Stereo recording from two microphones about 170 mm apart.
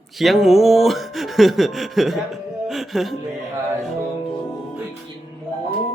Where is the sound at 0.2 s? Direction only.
Centre (ahead or behind).